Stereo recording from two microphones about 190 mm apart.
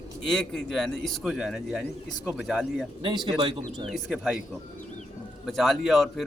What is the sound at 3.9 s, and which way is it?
Speech, 5° right (ahead or behind).